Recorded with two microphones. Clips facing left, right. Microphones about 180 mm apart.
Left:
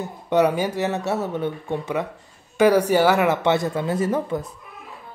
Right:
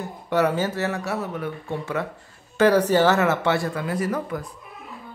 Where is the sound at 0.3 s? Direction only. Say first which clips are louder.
Left 3 dB; 15° left (ahead or behind).